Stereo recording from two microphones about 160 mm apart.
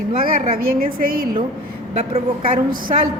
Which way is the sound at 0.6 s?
65° right (ahead or behind).